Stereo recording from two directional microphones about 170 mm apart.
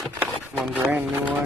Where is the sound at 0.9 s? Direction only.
10° right (ahead or behind).